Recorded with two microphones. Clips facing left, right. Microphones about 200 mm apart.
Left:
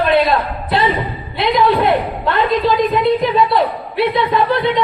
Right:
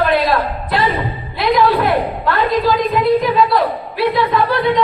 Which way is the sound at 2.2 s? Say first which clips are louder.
Left 1 dB; 25° left (ahead or behind).